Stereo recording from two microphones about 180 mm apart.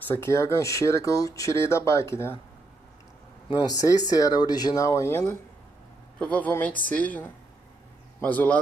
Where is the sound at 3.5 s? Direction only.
20° left (ahead or behind).